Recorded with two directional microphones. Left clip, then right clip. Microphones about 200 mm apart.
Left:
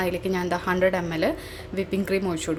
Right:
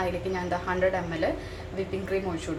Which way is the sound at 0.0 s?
50° left (ahead or behind).